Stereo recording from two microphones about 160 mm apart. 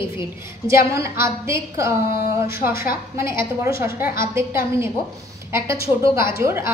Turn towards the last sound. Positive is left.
turn(degrees=-15)  # may be behind; listen again after turning